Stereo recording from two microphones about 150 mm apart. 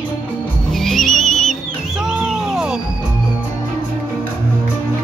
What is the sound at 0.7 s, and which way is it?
Music, centre (ahead or behind).